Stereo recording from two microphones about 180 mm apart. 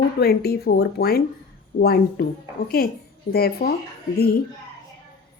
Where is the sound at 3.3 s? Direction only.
60° left (ahead or behind).